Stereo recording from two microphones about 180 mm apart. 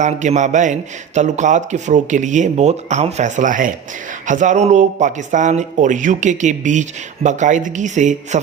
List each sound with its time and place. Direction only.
0.0 s a man's voice: 40° right (ahead or behind)